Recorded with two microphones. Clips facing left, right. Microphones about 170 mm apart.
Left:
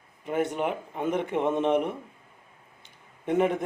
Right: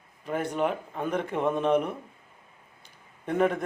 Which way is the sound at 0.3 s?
20° left (ahead or behind).